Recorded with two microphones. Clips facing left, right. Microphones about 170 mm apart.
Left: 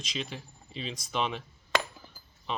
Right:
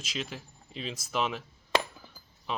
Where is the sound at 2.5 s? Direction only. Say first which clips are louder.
Even; 5° right (ahead or behind).